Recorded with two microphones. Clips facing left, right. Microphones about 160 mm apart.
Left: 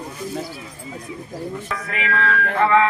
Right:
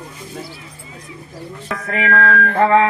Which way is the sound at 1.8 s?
45° right (ahead or behind).